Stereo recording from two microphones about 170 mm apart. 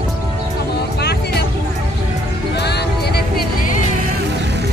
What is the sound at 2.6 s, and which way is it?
Music, 75° left (ahead or behind).